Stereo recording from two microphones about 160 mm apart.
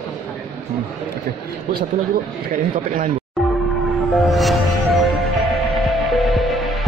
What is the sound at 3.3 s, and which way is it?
Music, centre (ahead or behind).